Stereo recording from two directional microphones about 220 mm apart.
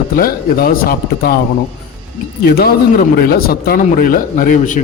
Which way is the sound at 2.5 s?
45° left (ahead or behind).